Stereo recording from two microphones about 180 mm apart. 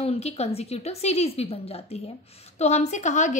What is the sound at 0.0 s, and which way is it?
A woman's voice, 35° left (ahead or behind).